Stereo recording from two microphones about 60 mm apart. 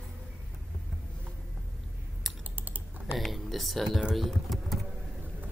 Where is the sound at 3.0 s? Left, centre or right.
Centre.